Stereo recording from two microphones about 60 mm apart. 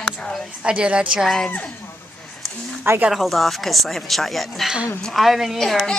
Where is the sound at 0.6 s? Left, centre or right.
Centre.